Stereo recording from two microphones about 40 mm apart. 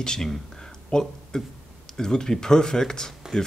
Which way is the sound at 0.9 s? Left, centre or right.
Centre.